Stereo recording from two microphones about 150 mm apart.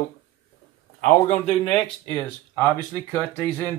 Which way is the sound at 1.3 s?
45° left (ahead or behind).